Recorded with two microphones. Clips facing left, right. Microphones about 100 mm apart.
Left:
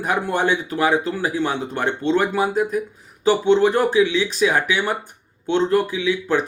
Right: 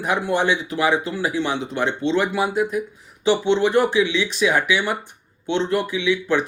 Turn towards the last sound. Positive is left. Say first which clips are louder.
# even
turn(degrees=40)  # may be behind; listen again after turning